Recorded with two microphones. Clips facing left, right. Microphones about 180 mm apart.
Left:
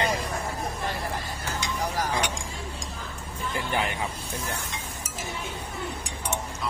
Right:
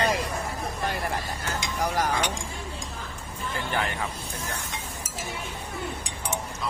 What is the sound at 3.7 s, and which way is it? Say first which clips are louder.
Speech: left 1 dB; 15° left (ahead or behind).